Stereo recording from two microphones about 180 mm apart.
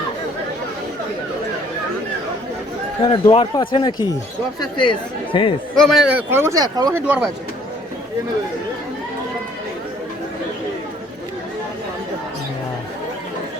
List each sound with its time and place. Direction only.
3.1 s speech: 30° left (ahead or behind)
5.7 s speech: centre (ahead or behind); by 7.0 s 20° right (ahead or behind)
7.0 s speech: 5° right (ahead or behind)